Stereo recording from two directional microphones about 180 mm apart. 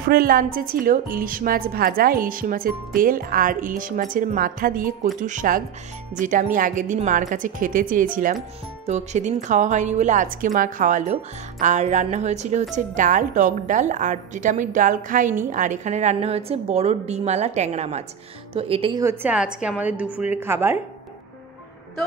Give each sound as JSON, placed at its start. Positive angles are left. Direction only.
{"t": 0.1, "sound": "a woman's voice", "side_deg": -55}
{"t": 19.0, "sound": "a woman's voice", "side_deg": -5}